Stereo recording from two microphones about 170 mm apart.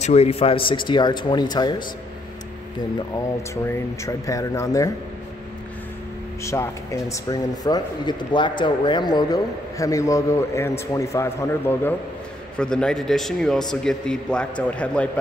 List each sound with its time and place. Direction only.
0.0 s speech: 40° left (ahead or behind)
3.6 s speech: 15° left (ahead or behind)
6.4 s a man's voice: 15° left (ahead or behind)